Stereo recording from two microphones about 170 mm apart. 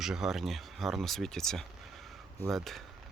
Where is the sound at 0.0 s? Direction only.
Centre (ahead or behind).